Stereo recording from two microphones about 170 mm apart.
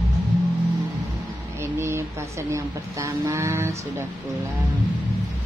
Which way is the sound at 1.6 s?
15° right (ahead or behind).